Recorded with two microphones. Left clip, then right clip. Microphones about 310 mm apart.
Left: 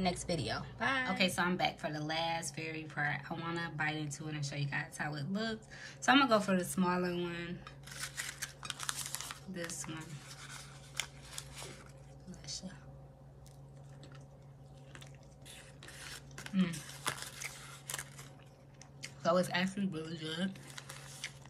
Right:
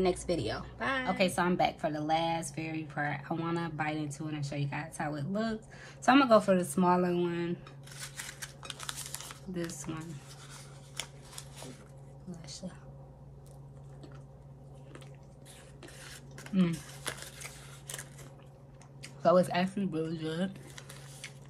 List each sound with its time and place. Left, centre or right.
0.0 s a woman's voice: centre
1.1 s a woman's voice: centre
8.3 s camera: centre
9.6 s a woman's voice: centre
11.0 s scissors: centre
16.0 s a sound: centre
19.2 s a woman's voice: centre